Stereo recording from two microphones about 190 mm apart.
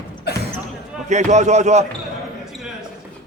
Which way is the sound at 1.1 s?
40° right (ahead or behind).